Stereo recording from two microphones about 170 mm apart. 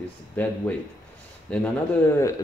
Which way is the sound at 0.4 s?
10° left (ahead or behind).